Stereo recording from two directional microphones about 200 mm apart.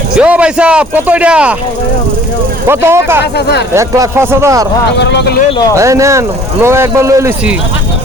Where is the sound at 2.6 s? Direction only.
10° right (ahead or behind).